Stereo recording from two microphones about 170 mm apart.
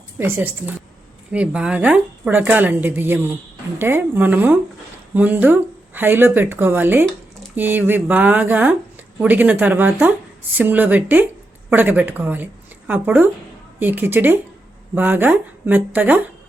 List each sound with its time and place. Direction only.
0.2 s a woman's voice: 15° right (ahead or behind)